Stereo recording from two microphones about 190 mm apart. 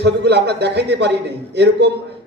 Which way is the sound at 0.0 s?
65° right (ahead or behind).